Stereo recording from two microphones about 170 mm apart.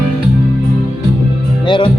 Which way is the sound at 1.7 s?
30° left (ahead or behind).